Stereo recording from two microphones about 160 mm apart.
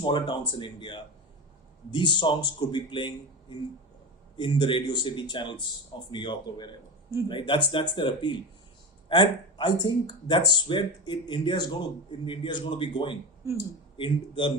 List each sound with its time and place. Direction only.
0.0 s speech: 30° left (ahead or behind)
4.4 s speech: 30° left (ahead or behind)
13.4 s speech: 15° right (ahead or behind)
13.9 s speech: 35° left (ahead or behind)